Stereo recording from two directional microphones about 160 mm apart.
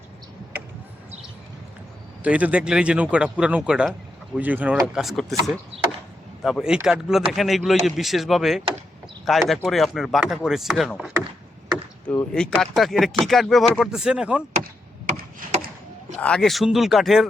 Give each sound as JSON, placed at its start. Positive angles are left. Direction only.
{"t": 2.2, "sound": "speech", "side_deg": -10}
{"t": 6.4, "sound": "speech", "side_deg": -5}
{"t": 15.4, "sound": "a sound", "side_deg": -55}
{"t": 16.1, "sound": "speech", "side_deg": 5}